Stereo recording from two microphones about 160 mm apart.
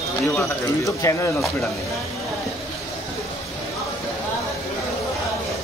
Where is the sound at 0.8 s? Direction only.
20° left (ahead or behind).